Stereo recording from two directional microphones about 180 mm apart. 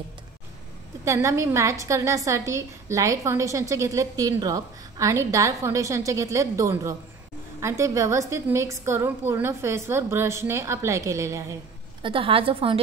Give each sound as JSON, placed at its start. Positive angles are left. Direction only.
{"t": 1.0, "sound": "a woman's voice", "side_deg": -15}
{"t": 12.0, "sound": "a woman's voice", "side_deg": -30}